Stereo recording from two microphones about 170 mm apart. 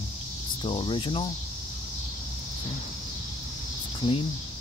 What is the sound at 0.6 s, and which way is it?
Speech, 30° left (ahead or behind).